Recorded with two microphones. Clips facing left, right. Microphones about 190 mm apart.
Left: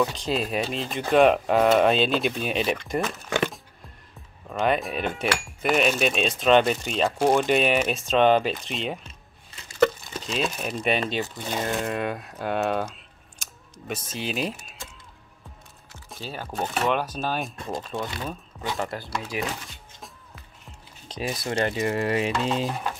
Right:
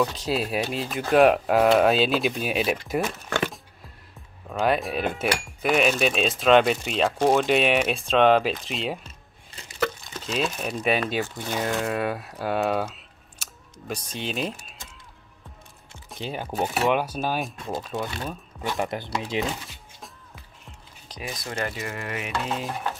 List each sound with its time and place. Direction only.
0.0 s speech: centre (ahead or behind)
4.5 s speech: centre (ahead or behind)
10.1 s speech: centre (ahead or behind)
16.2 s speech: 15° right (ahead or behind)
21.1 s speech: 30° left (ahead or behind)